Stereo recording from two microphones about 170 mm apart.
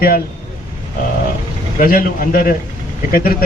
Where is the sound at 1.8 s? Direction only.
55° left (ahead or behind).